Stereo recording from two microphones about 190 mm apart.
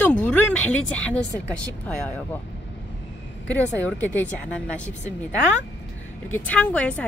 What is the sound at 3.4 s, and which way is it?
Speech, 10° left (ahead or behind).